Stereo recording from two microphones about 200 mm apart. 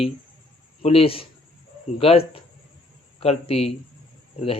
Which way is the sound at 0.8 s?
30° left (ahead or behind).